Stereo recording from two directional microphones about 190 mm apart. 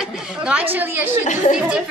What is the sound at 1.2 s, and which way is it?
Speech, 40° left (ahead or behind).